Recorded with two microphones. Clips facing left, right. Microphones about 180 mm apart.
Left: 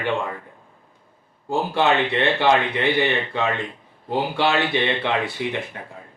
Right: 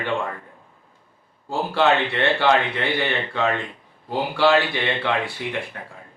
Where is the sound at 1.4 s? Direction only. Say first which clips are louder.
Even; 15° left (ahead or behind).